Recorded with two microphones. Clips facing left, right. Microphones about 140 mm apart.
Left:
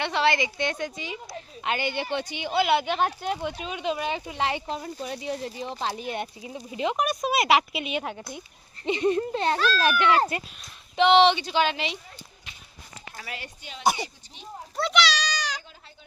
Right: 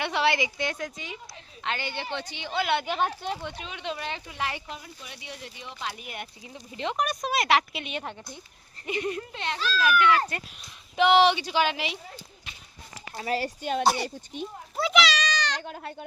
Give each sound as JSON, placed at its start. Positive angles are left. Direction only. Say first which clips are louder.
{"t": 0.0, "sound": "speech", "louder": "left 1 dB", "side_deg": -10}
{"t": 1.6, "sound": "speech", "louder": "left 4 dB", "side_deg": 15}
{"t": 4.6, "sound": "speech", "louder": "left 9 dB", "side_deg": 35}
{"t": 6.7, "sound": "speech", "louder": "left 3 dB", "side_deg": 10}
{"t": 8.8, "sound": "speech", "louder": "left 7 dB", "side_deg": 25}
{"t": 10.9, "sound": "speech", "louder": "left 2 dB", "side_deg": -5}
{"t": 13.1, "sound": "speech", "louder": "right 11 dB", "side_deg": -35}
{"t": 13.8, "sound": "speech", "louder": "left 1 dB", "side_deg": 15}
{"t": 14.8, "sound": "a sound", "louder": "even", "side_deg": -5}
{"t": 15.6, "sound": "a child's voice", "louder": "right 14 dB", "side_deg": -60}